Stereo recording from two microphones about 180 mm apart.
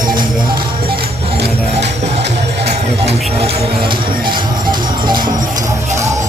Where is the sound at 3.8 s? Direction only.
25° right (ahead or behind).